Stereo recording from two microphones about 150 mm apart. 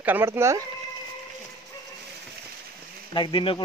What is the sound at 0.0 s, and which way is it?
Speech, 15° right (ahead or behind).